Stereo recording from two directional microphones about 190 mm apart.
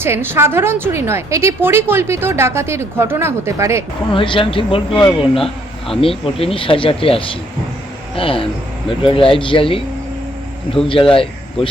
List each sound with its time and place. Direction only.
0.0 s a woman's voice: 10° right (ahead or behind)
4.1 s speech: 25° left (ahead or behind)
11.1 s speech: 30° left (ahead or behind)